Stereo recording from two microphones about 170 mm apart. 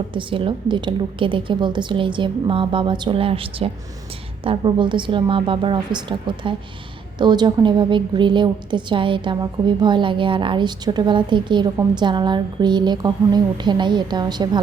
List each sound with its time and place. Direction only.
0.1 s a woman's voice: 30° right (ahead or behind)